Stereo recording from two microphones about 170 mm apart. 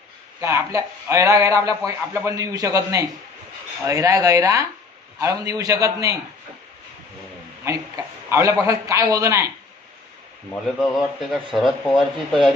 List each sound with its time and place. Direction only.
0.4 s a man's voice: 15° right (ahead or behind)
7.6 s a man's voice: 20° right (ahead or behind)
10.8 s speech: 5° right (ahead or behind)